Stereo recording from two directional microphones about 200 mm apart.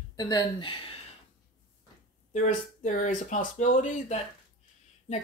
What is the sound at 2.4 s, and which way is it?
Speech, 40° left (ahead or behind).